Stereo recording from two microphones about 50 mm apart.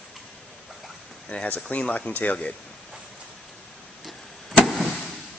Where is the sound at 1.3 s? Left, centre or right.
Left.